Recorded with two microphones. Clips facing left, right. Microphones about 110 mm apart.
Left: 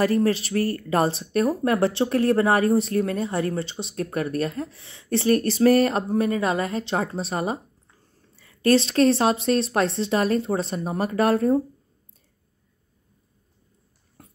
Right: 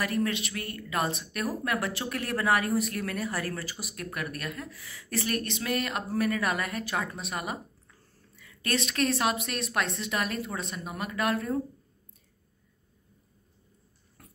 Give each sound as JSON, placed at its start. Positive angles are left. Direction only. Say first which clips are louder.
{"t": 0.0, "sound": "speech", "louder": "left 9 dB", "side_deg": 30}
{"t": 14.2, "sound": "dog", "louder": "left 4 dB", "side_deg": 25}